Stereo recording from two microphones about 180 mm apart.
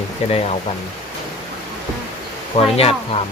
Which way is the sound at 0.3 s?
35° left (ahead or behind).